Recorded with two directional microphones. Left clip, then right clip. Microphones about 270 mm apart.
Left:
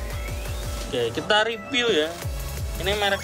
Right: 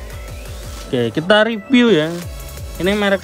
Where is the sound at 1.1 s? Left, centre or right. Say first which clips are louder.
Right 9 dB; right.